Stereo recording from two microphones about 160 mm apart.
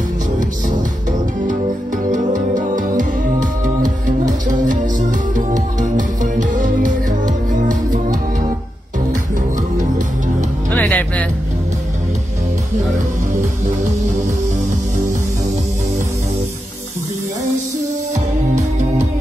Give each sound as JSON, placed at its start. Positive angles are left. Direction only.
{"t": 2.0, "sound": "music", "side_deg": -55}
{"t": 5.3, "sound": "music", "side_deg": -55}
{"t": 10.7, "sound": "music", "side_deg": 10}